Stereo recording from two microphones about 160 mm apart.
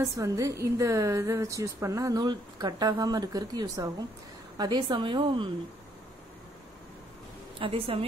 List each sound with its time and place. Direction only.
0.0 s a woman's voice: 20° right (ahead or behind)
7.5 s a woman's voice: 35° right (ahead or behind)